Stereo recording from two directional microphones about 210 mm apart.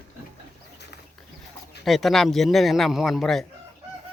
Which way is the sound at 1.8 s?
Centre (ahead or behind).